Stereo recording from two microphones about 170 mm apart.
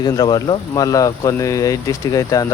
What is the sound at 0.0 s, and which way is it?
Speech, 25° left (ahead or behind).